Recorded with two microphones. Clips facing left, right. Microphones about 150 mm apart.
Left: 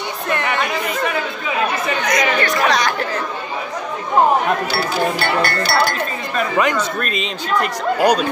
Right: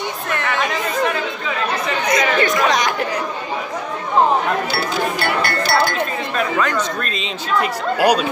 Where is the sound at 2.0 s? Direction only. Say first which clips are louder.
Right 2 dB; 25° right (ahead or behind).